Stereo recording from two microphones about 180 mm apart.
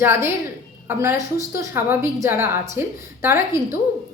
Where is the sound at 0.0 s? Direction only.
15° right (ahead or behind).